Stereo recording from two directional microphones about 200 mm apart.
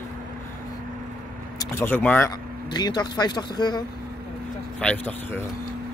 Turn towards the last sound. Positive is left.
turn(degrees=5)  # may be behind; listen again after turning